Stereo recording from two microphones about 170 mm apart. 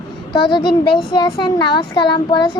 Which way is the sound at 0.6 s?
70° left (ahead or behind).